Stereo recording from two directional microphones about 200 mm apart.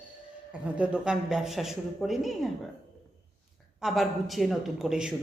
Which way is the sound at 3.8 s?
Centre (ahead or behind).